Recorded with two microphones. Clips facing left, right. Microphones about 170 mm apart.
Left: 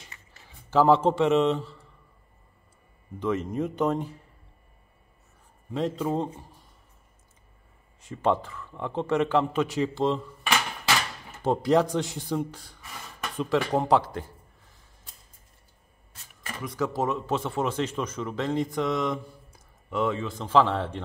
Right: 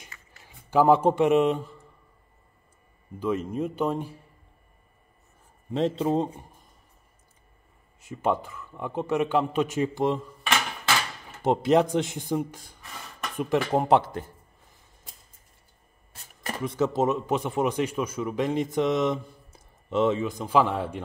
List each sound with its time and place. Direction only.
0.4 s a man's voice: 15° right (ahead or behind)
3.2 s speech: 10° right (ahead or behind)
5.7 s speech: 25° right (ahead or behind)
8.1 s speech: 15° right (ahead or behind)
11.4 s speech: 20° right (ahead or behind)
13.7 s speech: 20° right (ahead or behind)
16.4 s speech: 30° right (ahead or behind); by 21.0 s 10° right (ahead or behind)